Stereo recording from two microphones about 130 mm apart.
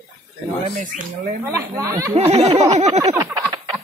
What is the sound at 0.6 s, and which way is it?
Speech, 80° right.